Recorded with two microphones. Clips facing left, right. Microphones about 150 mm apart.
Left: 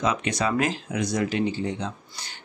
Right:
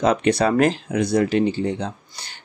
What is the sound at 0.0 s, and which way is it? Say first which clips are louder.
Speech: right 7 dB; 60° right (ahead or behind).